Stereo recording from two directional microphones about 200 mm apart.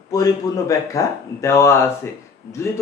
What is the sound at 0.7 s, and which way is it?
Speech, 15° left (ahead or behind).